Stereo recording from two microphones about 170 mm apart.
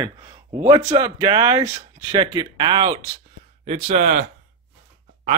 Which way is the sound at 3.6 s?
40° right (ahead or behind).